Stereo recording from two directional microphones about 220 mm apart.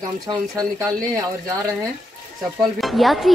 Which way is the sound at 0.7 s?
15° right (ahead or behind).